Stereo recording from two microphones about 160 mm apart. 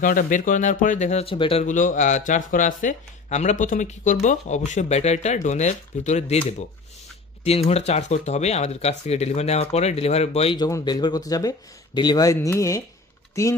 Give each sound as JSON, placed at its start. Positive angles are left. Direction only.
{"t": 0.0, "sound": "speech", "side_deg": 60}
{"t": 1.7, "sound": "speech", "side_deg": 50}
{"t": 7.4, "sound": "speech", "side_deg": 40}
{"t": 10.6, "sound": "speech", "side_deg": 25}